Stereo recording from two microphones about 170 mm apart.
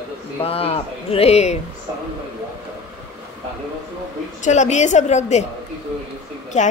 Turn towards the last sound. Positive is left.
turn(degrees=45)  # may be behind; listen again after turning